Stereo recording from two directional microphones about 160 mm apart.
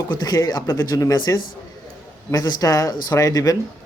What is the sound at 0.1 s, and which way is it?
Speech, 25° left (ahead or behind).